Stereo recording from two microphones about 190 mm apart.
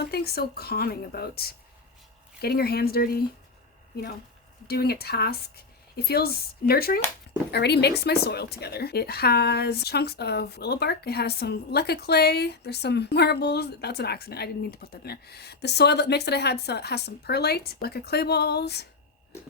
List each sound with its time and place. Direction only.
0.0 s a woman's voice: 55° left (ahead or behind)
4.7 s a woman's voice: 55° left (ahead or behind)